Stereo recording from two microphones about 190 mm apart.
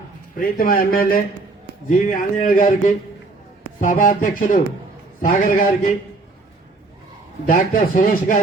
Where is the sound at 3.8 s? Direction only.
45° left (ahead or behind).